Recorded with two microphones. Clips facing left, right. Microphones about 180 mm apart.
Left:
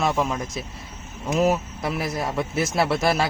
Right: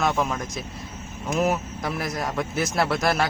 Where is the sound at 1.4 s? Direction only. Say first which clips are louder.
Left 3 dB; 25° left (ahead or behind).